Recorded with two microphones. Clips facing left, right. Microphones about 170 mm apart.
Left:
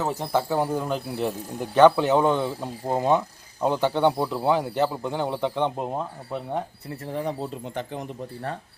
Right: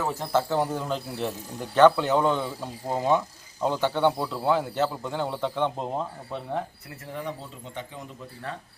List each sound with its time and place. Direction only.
0.0 s speech: 20° left (ahead or behind)
7.1 s speech: 35° left (ahead or behind)